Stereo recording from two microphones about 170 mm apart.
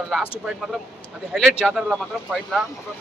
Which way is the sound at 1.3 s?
Centre (ahead or behind).